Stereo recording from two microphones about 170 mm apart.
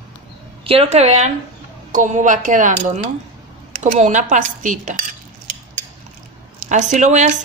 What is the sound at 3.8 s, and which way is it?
Speech, 45° right (ahead or behind).